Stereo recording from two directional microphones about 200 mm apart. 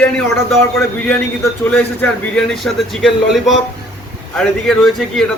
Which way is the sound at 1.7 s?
5° left (ahead or behind).